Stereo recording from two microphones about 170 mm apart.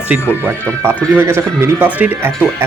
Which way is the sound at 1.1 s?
15° right (ahead or behind).